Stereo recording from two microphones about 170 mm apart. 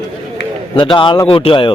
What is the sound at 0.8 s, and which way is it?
Speech, 30° left (ahead or behind).